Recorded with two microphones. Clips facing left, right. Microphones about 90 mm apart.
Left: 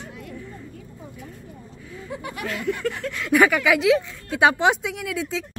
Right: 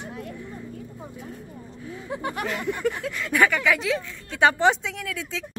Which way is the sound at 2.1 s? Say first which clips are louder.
Right 4 dB; 35° right (ahead or behind).